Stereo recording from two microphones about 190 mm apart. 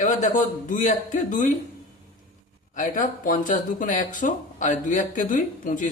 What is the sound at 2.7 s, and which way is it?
Speech, 45° left (ahead or behind).